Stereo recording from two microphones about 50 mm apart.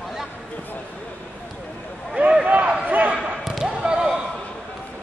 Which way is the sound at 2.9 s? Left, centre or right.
Right.